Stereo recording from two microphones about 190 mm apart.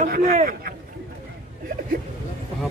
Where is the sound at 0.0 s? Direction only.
45° right (ahead or behind).